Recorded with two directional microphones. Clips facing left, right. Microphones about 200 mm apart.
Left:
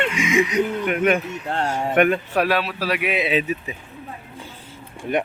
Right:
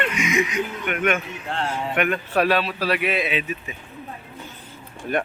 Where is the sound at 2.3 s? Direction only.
10° left (ahead or behind).